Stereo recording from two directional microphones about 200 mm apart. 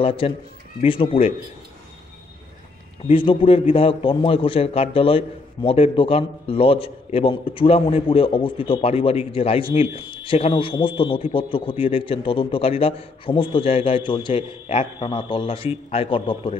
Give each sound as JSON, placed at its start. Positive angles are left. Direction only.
{"t": 0.0, "sound": "a man's voice", "side_deg": 25}
{"t": 3.1, "sound": "a man's voice", "side_deg": 25}